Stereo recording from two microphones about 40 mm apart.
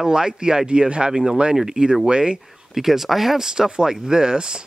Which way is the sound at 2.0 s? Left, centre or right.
Right.